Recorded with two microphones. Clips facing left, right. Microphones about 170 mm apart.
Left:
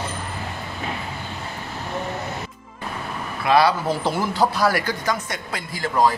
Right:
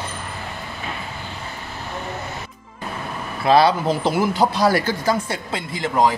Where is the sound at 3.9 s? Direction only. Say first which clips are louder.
Right 3 dB; 15° right (ahead or behind).